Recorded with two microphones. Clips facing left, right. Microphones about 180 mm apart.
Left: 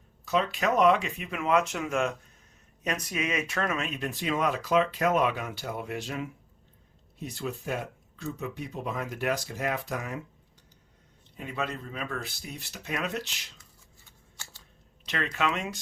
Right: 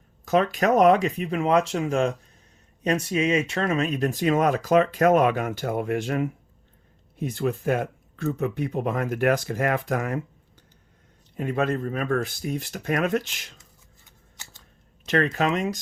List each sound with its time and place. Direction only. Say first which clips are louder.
0.3 s speech: right 6 dB; 45° right (ahead or behind)
11.3 s speech: right 9 dB; 50° right (ahead or behind)
15.0 s speech: right 7 dB; 45° right (ahead or behind)